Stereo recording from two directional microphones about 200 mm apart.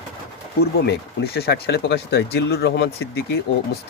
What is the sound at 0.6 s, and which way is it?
Speech, 55° left (ahead or behind).